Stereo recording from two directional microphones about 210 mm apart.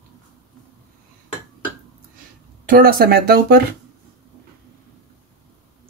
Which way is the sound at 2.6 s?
40° right (ahead or behind).